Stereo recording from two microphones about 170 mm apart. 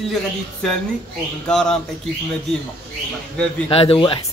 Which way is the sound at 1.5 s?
5° left (ahead or behind).